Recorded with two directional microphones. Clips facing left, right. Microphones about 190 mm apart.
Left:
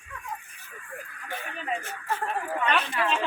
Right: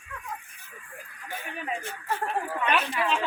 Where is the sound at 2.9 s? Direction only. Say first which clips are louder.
Even; centre (ahead or behind).